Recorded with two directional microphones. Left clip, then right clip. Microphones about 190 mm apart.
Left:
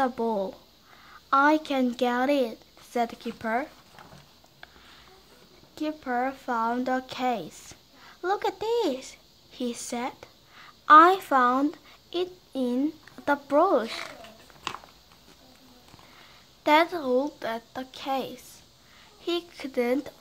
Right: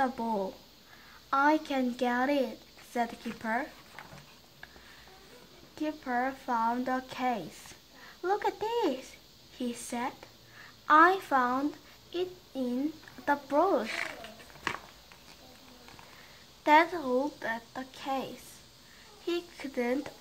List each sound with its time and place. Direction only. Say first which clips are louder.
0.0 s speech: left 4 dB; 25° left (ahead or behind)
5.8 s a woman's voice: left 3 dB; 25° left (ahead or behind)
16.6 s speech: left 2 dB; 30° left (ahead or behind)